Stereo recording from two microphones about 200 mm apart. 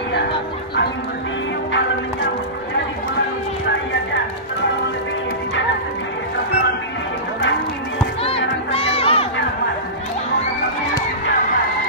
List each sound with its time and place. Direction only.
8.2 s music: 30° left (ahead or behind)